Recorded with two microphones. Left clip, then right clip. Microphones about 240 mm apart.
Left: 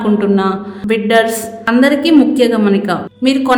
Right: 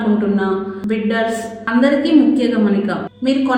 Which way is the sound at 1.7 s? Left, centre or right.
Left.